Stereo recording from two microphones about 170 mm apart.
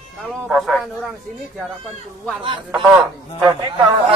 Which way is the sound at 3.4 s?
25° right (ahead or behind).